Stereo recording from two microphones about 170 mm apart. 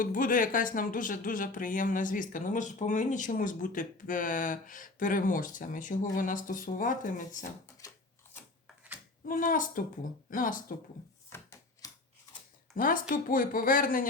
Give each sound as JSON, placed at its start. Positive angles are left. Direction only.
{"t": 0.0, "sound": "speech", "side_deg": 50}
{"t": 9.2, "sound": "speech", "side_deg": 55}
{"t": 11.8, "sound": "scissors", "side_deg": 20}
{"t": 12.7, "sound": "speech", "side_deg": 55}